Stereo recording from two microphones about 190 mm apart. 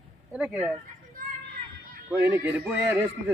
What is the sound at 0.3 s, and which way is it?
Speech, 5° right (ahead or behind).